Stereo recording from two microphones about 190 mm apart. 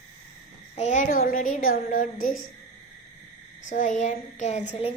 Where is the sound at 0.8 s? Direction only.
40° left (ahead or behind).